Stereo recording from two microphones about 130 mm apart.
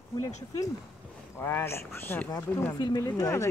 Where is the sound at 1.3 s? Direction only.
15° left (ahead or behind).